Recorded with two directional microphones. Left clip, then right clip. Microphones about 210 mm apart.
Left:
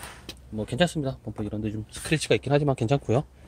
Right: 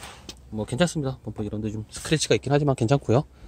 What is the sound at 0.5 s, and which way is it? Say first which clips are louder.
Speech: even; 25° right (ahead or behind).